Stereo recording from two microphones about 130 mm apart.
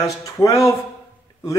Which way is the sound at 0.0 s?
25° left (ahead or behind).